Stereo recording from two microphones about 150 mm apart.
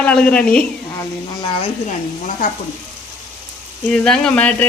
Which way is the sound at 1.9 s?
55° left (ahead or behind).